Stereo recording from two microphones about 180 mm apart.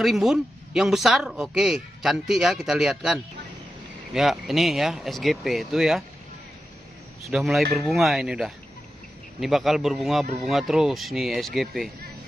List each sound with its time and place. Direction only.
0.0 s speech: centre (ahead or behind)
7.2 s speech: centre (ahead or behind)